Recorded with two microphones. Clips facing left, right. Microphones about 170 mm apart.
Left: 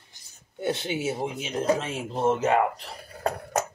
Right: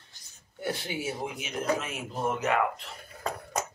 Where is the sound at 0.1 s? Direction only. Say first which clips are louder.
Left 8 dB; 20° left (ahead or behind).